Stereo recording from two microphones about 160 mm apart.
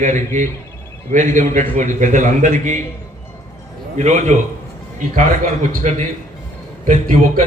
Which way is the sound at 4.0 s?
45° right (ahead or behind).